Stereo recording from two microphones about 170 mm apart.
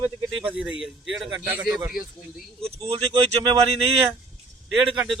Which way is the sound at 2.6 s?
35° right (ahead or behind).